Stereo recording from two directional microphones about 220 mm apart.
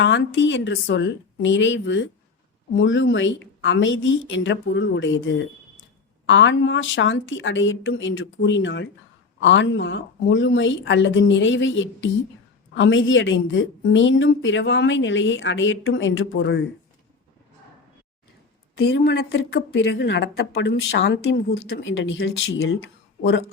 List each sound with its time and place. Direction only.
0.0 s a woman's voice: 55° left (ahead or behind)
18.8 s a woman's voice: 50° left (ahead or behind); by 22.8 s 65° left (ahead or behind)